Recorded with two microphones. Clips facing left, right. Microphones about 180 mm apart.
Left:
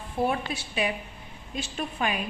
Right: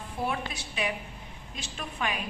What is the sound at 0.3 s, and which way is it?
A woman's voice, 30° left (ahead or behind).